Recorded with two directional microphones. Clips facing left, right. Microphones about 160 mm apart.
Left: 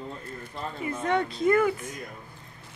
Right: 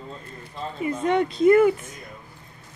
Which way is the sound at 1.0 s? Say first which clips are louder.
Right 6 dB; 20° right (ahead or behind).